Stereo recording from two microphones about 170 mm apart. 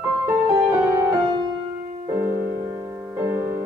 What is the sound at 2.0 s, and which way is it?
Music, 15° right (ahead or behind).